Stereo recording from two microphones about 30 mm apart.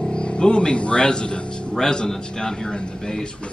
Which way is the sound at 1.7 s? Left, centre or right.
Left.